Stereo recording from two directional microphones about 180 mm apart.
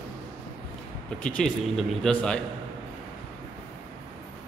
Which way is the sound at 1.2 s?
5° left (ahead or behind).